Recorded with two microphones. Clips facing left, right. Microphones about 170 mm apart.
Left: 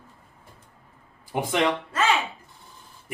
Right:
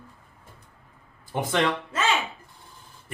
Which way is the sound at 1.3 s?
10° left (ahead or behind).